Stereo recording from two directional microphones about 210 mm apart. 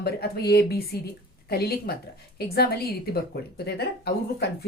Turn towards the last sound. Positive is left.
turn(degrees=50)  # may be behind; listen again after turning